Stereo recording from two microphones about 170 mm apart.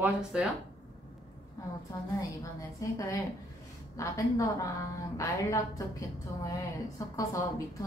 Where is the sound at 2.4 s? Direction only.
20° left (ahead or behind).